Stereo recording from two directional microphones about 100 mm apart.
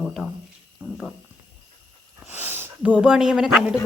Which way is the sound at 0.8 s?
20° right (ahead or behind).